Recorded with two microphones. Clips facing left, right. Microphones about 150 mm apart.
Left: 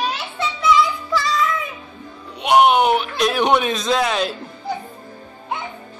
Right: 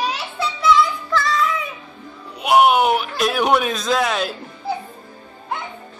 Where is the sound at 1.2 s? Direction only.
Centre (ahead or behind).